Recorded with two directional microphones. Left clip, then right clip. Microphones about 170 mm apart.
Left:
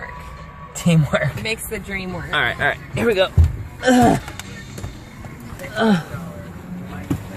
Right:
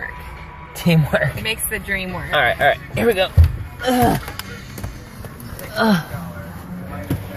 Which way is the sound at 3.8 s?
35° left (ahead or behind).